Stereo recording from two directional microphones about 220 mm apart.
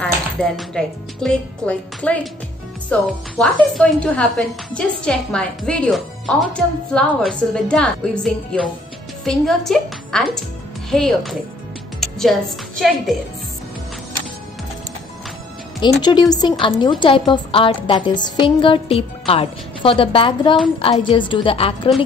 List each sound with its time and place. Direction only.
0.0 s a woman's voice: 5° left (ahead or behind)
15.8 s a woman's voice: 20° left (ahead or behind)